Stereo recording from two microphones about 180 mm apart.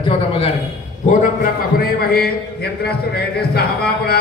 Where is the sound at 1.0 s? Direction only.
40° left (ahead or behind).